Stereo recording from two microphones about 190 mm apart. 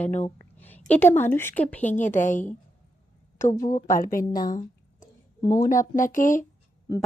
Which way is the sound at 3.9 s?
45° left (ahead or behind).